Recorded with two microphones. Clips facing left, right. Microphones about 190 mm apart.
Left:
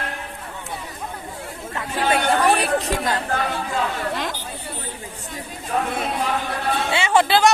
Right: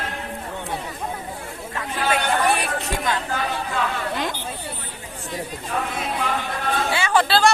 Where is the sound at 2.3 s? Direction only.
35° left (ahead or behind).